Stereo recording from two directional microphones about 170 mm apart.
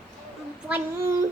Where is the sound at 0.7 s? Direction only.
15° right (ahead or behind).